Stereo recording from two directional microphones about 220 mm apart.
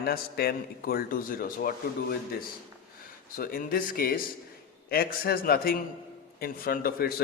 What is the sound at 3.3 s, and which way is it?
A man's voice, 40° left (ahead or behind).